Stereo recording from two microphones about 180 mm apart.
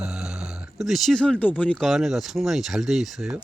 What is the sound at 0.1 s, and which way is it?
Speech, 5° right (ahead or behind).